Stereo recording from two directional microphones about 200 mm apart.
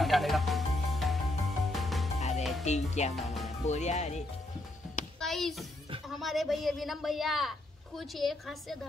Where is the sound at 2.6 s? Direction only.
35° left (ahead or behind).